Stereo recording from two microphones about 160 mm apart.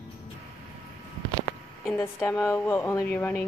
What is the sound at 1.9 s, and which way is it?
A woman's voice, 15° left (ahead or behind).